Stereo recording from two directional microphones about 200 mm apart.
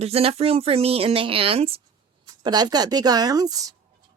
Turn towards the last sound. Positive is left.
turn(degrees=-20)  # may be behind; listen again after turning